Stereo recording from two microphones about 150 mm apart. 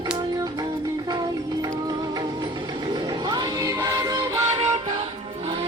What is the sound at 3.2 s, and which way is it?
Music, 30° right (ahead or behind).